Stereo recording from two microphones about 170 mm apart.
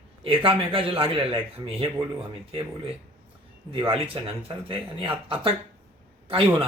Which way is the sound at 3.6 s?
30° right (ahead or behind).